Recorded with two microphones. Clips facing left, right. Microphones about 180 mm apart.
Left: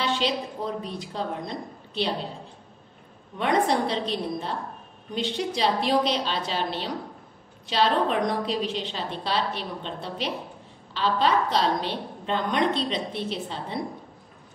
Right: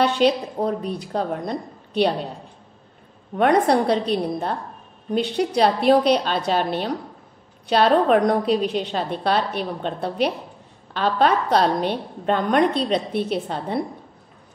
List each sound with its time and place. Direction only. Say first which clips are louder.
0.0 s a woman's voice: right 8 dB; 55° right (ahead or behind)
3.3 s a woman's voice: right 6 dB; 60° right (ahead or behind)
5.1 s a woman's voice: right 7 dB; 60° right (ahead or behind)